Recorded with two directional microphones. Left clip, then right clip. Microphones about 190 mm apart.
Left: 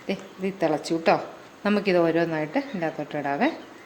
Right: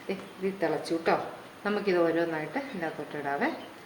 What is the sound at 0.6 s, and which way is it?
A woman's voice, 50° left (ahead or behind).